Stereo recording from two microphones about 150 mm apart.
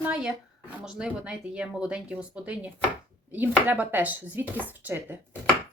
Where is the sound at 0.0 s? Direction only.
5° right (ahead or behind).